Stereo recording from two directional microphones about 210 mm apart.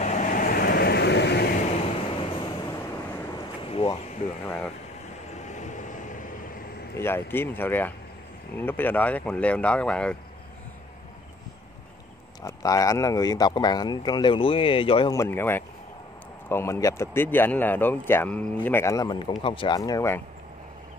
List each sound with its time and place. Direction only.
0.0 s vehicle: 35° left (ahead or behind); by 1.5 s 50° left (ahead or behind)
2.1 s waves: 25° left (ahead or behind)
3.6 s a sound: 25° left (ahead or behind)
4.5 s speech: 5° left (ahead or behind)
5.3 s vehicle: 35° left (ahead or behind)
7.0 s speech: 10° left (ahead or behind)
12.4 s speech: 15° left (ahead or behind)